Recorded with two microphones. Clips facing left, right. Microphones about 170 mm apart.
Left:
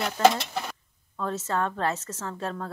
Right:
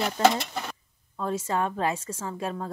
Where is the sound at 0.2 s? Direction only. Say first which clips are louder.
Left 2 dB; 15° right (ahead or behind).